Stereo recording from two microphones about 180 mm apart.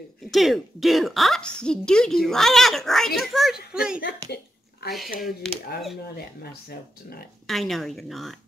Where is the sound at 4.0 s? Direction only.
65° left (ahead or behind).